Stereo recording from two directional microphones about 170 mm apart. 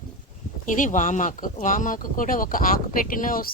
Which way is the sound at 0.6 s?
50° left (ahead or behind).